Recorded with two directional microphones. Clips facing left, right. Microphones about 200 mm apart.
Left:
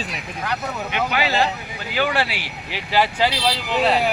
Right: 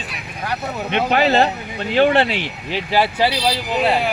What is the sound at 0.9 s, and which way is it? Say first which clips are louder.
Speech: right 7 dB; 40° right (ahead or behind).